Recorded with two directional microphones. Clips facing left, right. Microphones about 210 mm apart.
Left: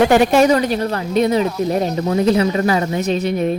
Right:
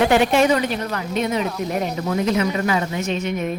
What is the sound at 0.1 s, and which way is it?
A woman's voice, 40° left (ahead or behind).